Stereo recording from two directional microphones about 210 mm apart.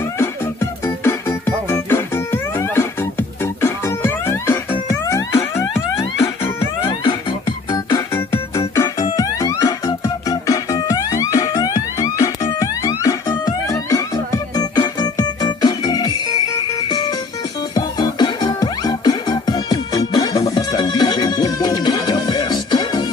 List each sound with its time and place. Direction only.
0.2 s music: 10° left (ahead or behind)
5.9 s music: 25° left (ahead or behind)